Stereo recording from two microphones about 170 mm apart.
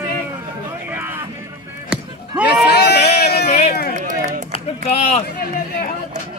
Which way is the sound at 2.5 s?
75° left (ahead or behind).